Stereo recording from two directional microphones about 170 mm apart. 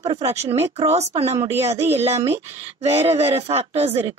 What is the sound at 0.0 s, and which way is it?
Speech, 40° right (ahead or behind).